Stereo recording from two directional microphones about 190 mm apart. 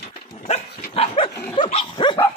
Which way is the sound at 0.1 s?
25° left (ahead or behind).